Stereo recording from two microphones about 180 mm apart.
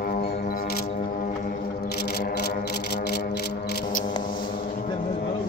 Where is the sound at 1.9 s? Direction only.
65° left (ahead or behind).